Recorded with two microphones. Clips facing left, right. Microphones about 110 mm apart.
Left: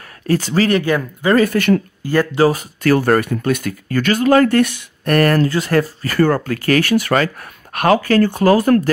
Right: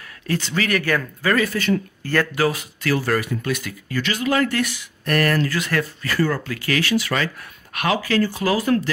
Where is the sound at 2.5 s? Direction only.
45° left (ahead or behind).